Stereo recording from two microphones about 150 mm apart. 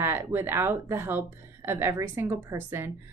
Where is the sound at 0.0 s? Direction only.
15° right (ahead or behind).